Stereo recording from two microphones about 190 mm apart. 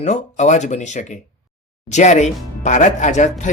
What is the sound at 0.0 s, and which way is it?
Speech, 40° left (ahead or behind).